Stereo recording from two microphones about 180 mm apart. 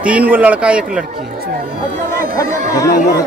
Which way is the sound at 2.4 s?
20° left (ahead or behind).